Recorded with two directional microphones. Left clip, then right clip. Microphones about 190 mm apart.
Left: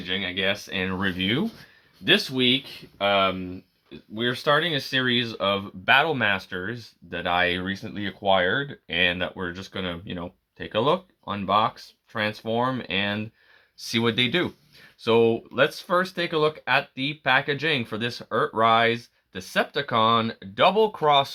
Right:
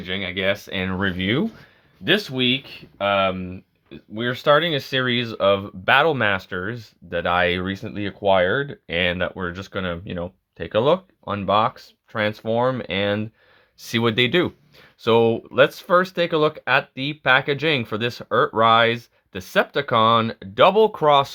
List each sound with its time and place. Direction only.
0.0 s speech: 45° right (ahead or behind)